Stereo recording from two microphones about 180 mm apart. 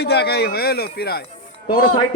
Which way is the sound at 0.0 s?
65° left (ahead or behind).